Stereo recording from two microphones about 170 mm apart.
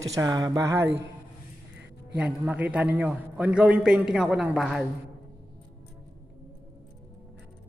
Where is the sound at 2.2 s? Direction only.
10° right (ahead or behind).